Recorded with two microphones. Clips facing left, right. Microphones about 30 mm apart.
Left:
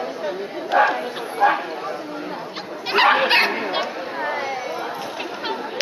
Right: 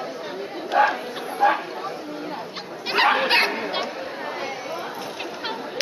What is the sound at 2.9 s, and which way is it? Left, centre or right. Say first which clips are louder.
Dog: left 3 dB; centre.